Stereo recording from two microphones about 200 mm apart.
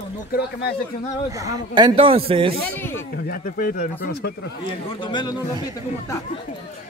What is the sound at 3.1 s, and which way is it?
Speech, 50° left (ahead or behind).